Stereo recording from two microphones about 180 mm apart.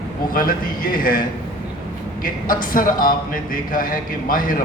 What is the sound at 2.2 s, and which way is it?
A man's voice, 50° left (ahead or behind).